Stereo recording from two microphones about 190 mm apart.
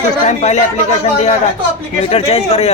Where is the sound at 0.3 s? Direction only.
35° left (ahead or behind).